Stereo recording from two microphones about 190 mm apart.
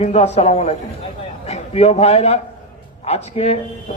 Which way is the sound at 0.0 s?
35° left (ahead or behind).